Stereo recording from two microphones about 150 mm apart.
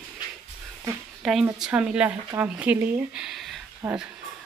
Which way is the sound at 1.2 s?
Centre (ahead or behind).